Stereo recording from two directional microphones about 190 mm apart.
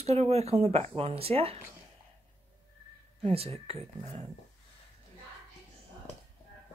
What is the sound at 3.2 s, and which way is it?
Speech, 30° right (ahead or behind).